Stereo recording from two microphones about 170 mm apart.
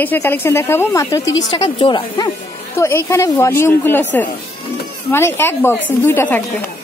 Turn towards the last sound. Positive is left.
turn(degrees=10)  # may be behind; listen again after turning